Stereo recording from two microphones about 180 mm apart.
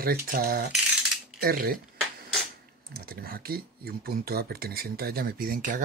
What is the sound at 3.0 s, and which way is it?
Speech, 55° right (ahead or behind).